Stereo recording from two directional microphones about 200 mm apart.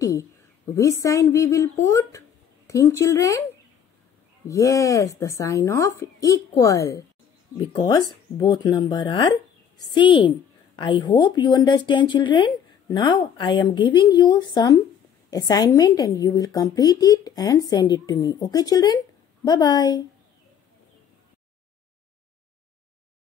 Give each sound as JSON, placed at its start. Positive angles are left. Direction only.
{"t": 0.0, "sound": "speech", "side_deg": 15}
{"t": 4.5, "sound": "a woman's voice", "side_deg": 15}